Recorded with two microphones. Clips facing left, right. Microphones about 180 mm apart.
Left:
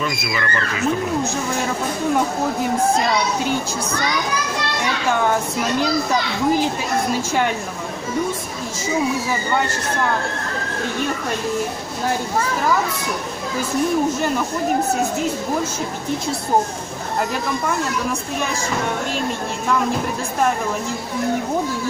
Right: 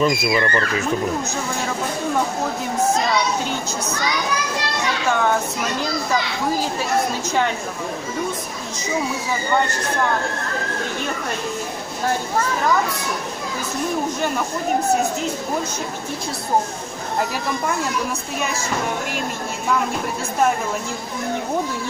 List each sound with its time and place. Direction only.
0.0 s speech: 35° right (ahead or behind)